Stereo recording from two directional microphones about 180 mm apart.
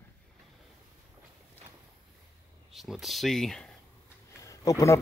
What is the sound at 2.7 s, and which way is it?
Speech, centre (ahead or behind).